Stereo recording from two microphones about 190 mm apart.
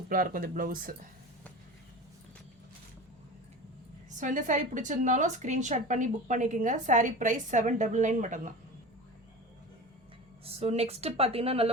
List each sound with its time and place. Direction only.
0.1 s speech: 50° right (ahead or behind)
4.2 s a woman's voice: 40° right (ahead or behind)
10.4 s a woman's voice: 35° right (ahead or behind)